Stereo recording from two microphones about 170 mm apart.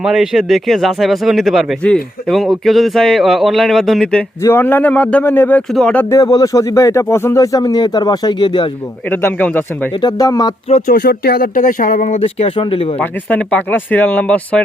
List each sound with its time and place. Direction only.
0.0 s speech: centre (ahead or behind)
6.1 s speech: 20° left (ahead or behind)
9.2 s speech: 10° left (ahead or behind)
10.0 s speech: 20° left (ahead or behind)
10.7 s speech: 40° left (ahead or behind)
10.9 s speech: 70° left (ahead or behind); by 12.2 s 50° left (ahead or behind)
12.2 s speech: 35° left (ahead or behind)
13.0 s speech: 10° left (ahead or behind)